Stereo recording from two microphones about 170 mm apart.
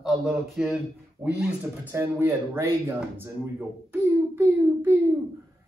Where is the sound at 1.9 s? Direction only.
15° right (ahead or behind).